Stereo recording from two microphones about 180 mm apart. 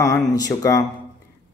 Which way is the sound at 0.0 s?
20° left (ahead or behind).